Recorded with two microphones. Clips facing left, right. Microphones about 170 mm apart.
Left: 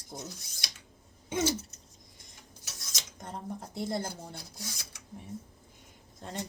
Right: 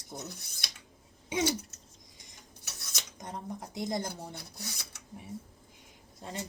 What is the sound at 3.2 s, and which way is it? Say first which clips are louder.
Speech: even; 15° right (ahead or behind).